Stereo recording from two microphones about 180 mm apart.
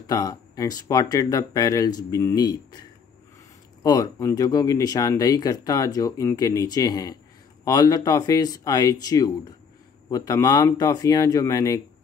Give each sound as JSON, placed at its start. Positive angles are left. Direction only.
{"t": 0.0, "sound": "speech", "side_deg": 20}
{"t": 3.8, "sound": "speech", "side_deg": 20}